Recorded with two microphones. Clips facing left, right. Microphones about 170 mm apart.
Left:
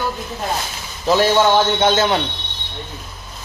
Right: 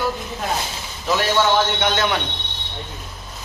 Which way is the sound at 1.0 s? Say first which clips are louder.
Left 5 dB; 30° left (ahead or behind).